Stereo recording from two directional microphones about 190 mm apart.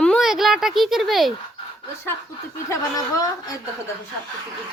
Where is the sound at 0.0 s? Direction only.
Centre (ahead or behind).